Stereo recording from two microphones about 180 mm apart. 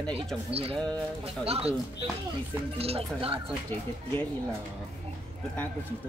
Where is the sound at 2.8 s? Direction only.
35° right (ahead or behind).